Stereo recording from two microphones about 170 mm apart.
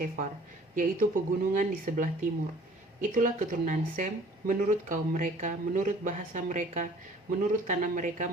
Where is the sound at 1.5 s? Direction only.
50° right (ahead or behind).